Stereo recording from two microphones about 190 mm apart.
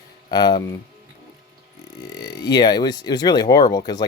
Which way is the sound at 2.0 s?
20° left (ahead or behind).